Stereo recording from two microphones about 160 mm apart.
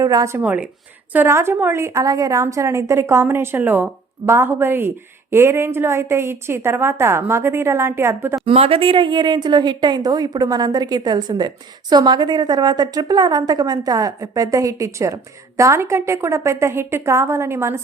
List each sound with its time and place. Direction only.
0.0 s a woman's voice: 20° right (ahead or behind)
8.4 s a woman's voice: 35° right (ahead or behind); by 17.7 s 15° right (ahead or behind)